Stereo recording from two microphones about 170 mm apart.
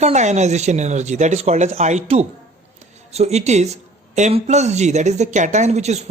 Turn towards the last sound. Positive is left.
turn(degrees=-40)  # may be behind; listen again after turning